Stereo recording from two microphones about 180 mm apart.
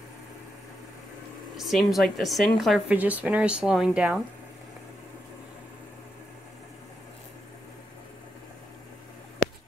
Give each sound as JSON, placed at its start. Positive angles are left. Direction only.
{"t": 1.6, "sound": "speech", "side_deg": 0}